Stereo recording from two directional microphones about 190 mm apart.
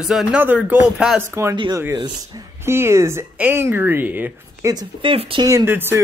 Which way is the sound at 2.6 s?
15° right (ahead or behind).